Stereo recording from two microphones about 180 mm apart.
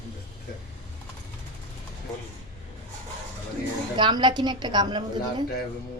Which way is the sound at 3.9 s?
25° right (ahead or behind).